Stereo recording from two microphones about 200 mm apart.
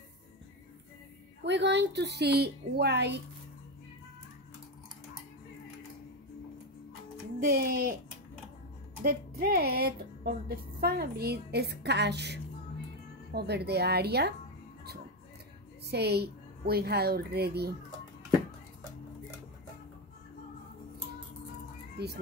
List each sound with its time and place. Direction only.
1.4 s a woman's voice: 60° right (ahead or behind)
7.3 s speech: 45° right (ahead or behind)
9.0 s a woman's voice: 50° right (ahead or behind)
15.9 s speech: 55° right (ahead or behind)
21.9 s cat: 55° right (ahead or behind)